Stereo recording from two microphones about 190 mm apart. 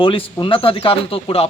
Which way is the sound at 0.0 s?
25° left (ahead or behind).